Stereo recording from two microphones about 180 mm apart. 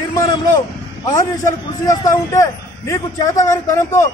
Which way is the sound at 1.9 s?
20° left (ahead or behind).